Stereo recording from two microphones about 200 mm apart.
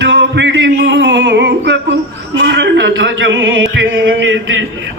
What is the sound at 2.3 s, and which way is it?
A man's voice, 60° right (ahead or behind).